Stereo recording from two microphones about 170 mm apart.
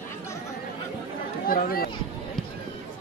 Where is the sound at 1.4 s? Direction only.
60° left (ahead or behind).